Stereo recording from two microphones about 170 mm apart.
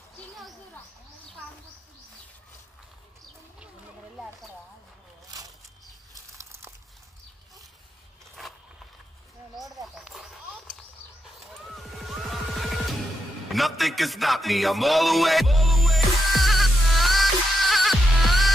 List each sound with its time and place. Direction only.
6.3 s crumpling: 15° right (ahead or behind)
9.6 s a sound: centre (ahead or behind)
11.5 s music: centre (ahead or behind)